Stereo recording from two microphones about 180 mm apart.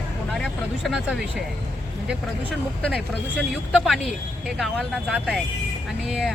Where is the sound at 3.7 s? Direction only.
Centre (ahead or behind).